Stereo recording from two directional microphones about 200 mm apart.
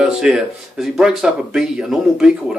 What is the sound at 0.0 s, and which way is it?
Speech, centre (ahead or behind).